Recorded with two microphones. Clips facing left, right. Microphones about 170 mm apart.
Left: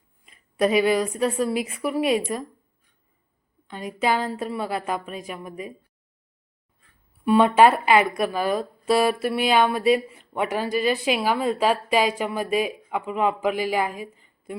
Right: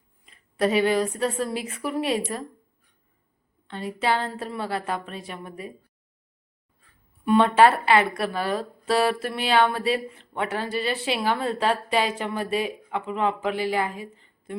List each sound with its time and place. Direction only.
0.6 s speech: 10° left (ahead or behind)
3.7 s speech: 15° left (ahead or behind)
7.3 s speech: 10° left (ahead or behind)